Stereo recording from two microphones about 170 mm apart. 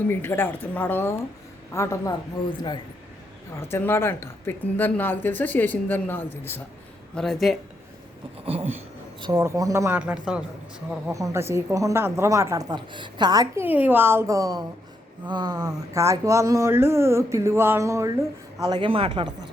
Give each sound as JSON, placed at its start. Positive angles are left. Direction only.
{"t": 0.1, "sound": "a woman's voice", "side_deg": 15}
{"t": 3.7, "sound": "a woman's voice", "side_deg": 15}
{"t": 8.4, "sound": "speech", "side_deg": -35}
{"t": 9.2, "sound": "speech", "side_deg": -20}
{"t": 11.1, "sound": "a woman's voice", "side_deg": -20}
{"t": 13.7, "sound": "speech", "side_deg": -10}
{"t": 18.6, "sound": "a woman's voice", "side_deg": -25}